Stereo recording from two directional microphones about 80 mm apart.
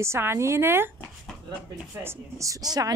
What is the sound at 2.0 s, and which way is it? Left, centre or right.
Child singing, right.